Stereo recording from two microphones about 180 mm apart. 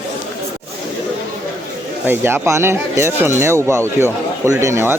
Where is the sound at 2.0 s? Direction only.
10° right (ahead or behind).